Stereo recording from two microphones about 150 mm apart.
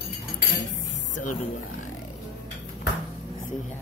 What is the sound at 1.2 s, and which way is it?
Speech, 60° left (ahead or behind).